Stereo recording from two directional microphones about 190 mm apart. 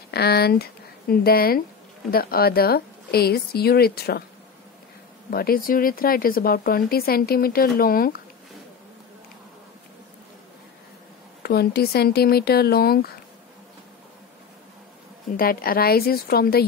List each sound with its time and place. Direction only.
0.1 s a woman's voice: 55° left (ahead or behind)
5.3 s speech: 50° left (ahead or behind)
11.4 s a woman's voice: 55° left (ahead or behind)
15.3 s speech: 50° left (ahead or behind)